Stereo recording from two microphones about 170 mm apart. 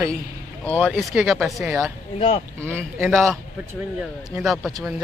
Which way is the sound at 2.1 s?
35° left (ahead or behind).